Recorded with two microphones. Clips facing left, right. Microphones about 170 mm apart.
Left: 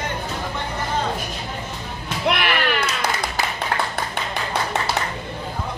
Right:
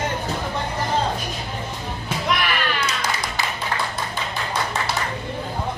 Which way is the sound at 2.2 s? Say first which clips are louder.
Left 3 dB; 65° left (ahead or behind).